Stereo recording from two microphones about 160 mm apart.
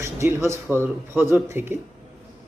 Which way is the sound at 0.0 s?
15° right (ahead or behind).